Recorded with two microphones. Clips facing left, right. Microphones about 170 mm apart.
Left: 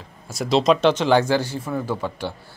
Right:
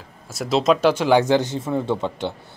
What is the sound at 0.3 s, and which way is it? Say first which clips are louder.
Speech: left 1 dB; centre (ahead or behind).